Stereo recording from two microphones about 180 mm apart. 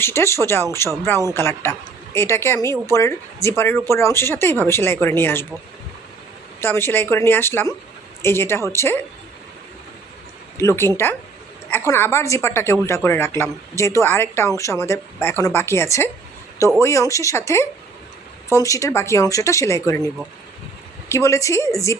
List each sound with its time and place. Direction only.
0.0 s speech: 15° left (ahead or behind)
6.6 s speech: 15° left (ahead or behind)
10.6 s speech: 15° left (ahead or behind)
21.1 s speech: 15° left (ahead or behind)